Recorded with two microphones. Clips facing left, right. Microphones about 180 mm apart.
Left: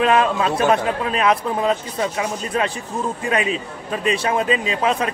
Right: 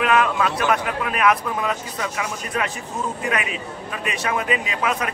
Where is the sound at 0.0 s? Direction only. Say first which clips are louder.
Left 2 dB; 30° left (ahead or behind).